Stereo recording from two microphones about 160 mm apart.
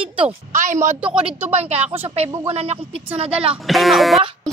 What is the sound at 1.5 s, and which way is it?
A woman's voice, 40° right (ahead or behind).